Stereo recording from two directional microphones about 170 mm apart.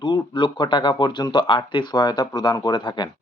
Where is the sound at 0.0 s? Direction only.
25° left (ahead or behind).